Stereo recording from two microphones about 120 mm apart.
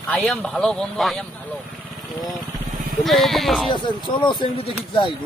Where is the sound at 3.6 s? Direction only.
40° left (ahead or behind).